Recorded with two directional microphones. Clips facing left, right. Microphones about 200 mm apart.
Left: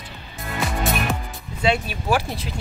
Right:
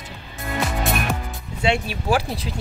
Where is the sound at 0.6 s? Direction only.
Centre (ahead or behind).